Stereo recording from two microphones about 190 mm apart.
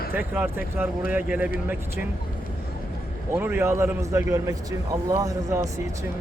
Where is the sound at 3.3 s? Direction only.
10° right (ahead or behind).